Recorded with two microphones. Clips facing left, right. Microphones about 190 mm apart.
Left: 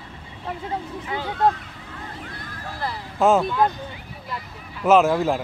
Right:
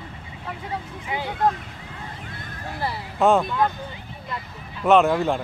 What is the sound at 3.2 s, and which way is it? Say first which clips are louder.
Speech: left 1 dB; 5° left (ahead or behind).